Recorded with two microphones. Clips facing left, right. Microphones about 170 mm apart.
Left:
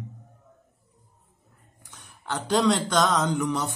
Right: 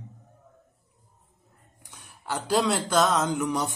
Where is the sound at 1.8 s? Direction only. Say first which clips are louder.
Even; 10° right (ahead or behind).